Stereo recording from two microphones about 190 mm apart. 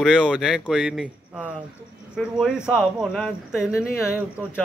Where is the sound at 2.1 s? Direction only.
Centre (ahead or behind).